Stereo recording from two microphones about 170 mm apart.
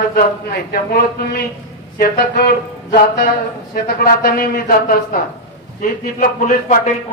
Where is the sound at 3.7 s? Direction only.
60° left (ahead or behind).